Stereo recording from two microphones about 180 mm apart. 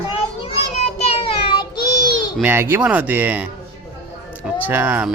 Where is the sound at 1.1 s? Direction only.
30° left (ahead or behind).